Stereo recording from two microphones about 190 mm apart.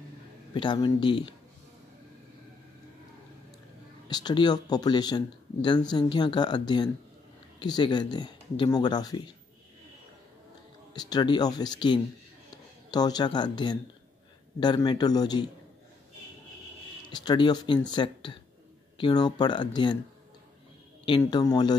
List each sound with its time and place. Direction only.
0.6 s speech: 25° left (ahead or behind)
4.1 s speech: 20° left (ahead or behind)
11.0 s speech: 20° left (ahead or behind)
17.1 s speech: 20° left (ahead or behind)
21.0 s speech: 25° left (ahead or behind)